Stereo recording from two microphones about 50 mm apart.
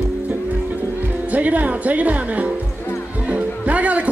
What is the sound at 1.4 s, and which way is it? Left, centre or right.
Speech, right.